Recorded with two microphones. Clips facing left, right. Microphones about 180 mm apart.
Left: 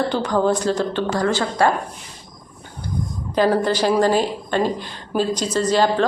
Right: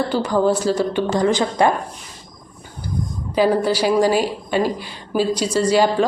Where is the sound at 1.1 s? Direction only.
20° right (ahead or behind).